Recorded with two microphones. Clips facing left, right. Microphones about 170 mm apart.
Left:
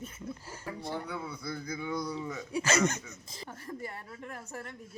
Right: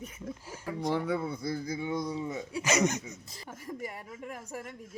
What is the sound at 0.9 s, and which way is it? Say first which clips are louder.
Speech: right 8 dB; 80° right.